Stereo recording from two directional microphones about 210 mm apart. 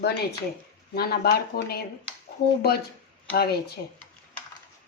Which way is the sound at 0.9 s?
50° left (ahead or behind).